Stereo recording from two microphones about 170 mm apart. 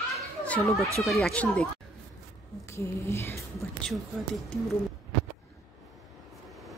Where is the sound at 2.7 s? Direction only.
15° left (ahead or behind).